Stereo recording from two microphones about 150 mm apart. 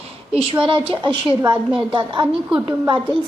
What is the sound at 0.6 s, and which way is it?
A woman's voice, 35° right (ahead or behind).